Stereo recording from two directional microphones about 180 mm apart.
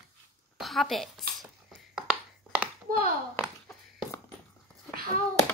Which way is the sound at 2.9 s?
50° right (ahead or behind).